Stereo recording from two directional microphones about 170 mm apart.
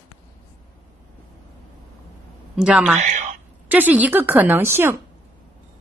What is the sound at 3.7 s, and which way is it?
A woman's voice, 10° right (ahead or behind).